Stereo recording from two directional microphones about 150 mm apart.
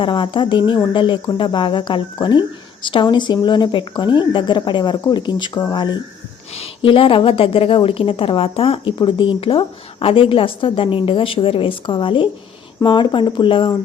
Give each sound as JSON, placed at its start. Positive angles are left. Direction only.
{"t": 0.0, "sound": "a woman's voice", "side_deg": 35}
{"t": 6.5, "sound": "a woman's voice", "side_deg": 40}